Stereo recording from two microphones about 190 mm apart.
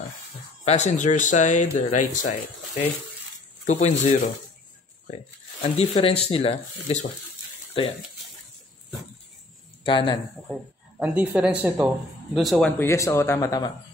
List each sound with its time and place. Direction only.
0.7 s speech: 40° left (ahead or behind)
3.6 s speech: 40° left (ahead or behind)
5.6 s speech: 30° left (ahead or behind)
9.8 s speech: 25° left (ahead or behind)
10.5 s speech: 5° right (ahead or behind)
12.7 s a man's voice: 15° left (ahead or behind)